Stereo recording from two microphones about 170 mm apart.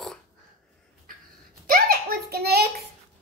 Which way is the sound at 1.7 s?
60° right (ahead or behind).